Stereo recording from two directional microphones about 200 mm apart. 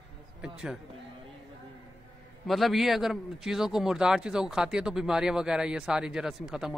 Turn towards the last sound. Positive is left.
turn(degrees=0)  # may be behind; listen again after turning